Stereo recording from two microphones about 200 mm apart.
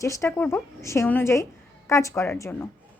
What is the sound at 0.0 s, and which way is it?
A woman's voice, 15° left (ahead or behind).